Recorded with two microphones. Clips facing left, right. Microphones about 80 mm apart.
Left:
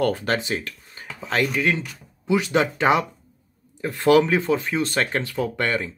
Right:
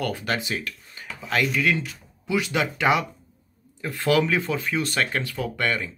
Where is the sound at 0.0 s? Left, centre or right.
Left.